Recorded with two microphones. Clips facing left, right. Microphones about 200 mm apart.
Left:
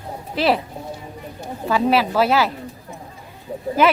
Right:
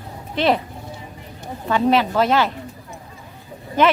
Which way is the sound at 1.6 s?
5° left (ahead or behind).